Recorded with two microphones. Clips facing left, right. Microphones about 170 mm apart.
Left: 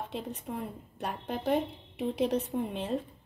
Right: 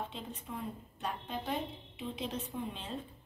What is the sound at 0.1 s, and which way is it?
Speech, 70° left (ahead or behind).